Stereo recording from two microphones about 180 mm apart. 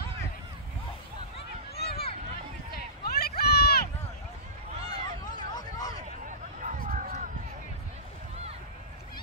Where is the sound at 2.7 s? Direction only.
60° left (ahead or behind).